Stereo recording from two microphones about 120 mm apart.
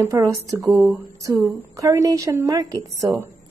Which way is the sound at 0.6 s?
Centre (ahead or behind).